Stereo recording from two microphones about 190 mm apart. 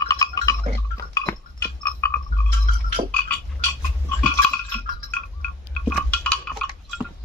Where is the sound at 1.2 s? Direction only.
15° left (ahead or behind).